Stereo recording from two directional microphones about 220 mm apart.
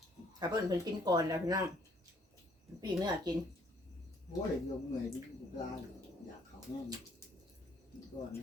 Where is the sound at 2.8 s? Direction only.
20° right (ahead or behind).